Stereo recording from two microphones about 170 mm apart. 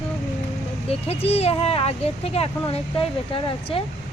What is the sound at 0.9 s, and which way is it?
Speech, 35° left (ahead or behind).